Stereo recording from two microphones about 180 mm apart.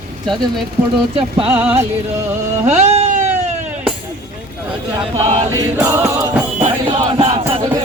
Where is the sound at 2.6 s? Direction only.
35° right (ahead or behind).